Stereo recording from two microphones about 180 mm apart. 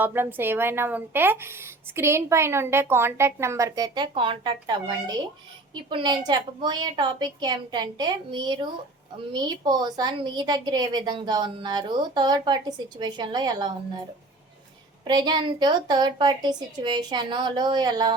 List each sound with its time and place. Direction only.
0.0 s a woman's voice: 10° right (ahead or behind)
15.0 s a woman's voice: 25° right (ahead or behind)